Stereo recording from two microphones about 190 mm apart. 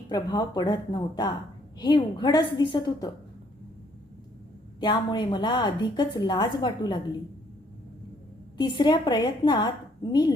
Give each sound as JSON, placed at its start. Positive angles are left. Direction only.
{"t": 0.1, "sound": "a woman's voice", "side_deg": 20}
{"t": 4.8, "sound": "a woman's voice", "side_deg": 25}
{"t": 8.5, "sound": "a woman's voice", "side_deg": 25}